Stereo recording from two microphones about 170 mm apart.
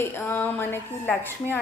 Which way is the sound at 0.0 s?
10° left (ahead or behind).